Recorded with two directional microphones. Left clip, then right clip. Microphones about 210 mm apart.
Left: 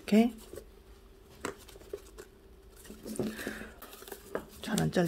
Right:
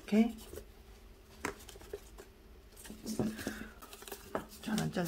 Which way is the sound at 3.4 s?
40° left (ahead or behind).